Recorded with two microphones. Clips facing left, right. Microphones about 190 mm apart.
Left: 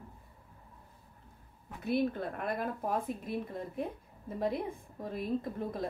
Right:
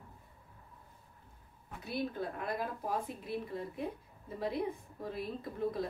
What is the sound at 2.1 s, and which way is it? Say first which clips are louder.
Speech: left 2 dB; 55° left (ahead or behind).